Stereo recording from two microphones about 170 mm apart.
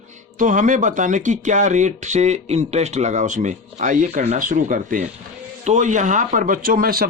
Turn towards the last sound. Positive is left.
turn(degrees=-60)  # may be behind; listen again after turning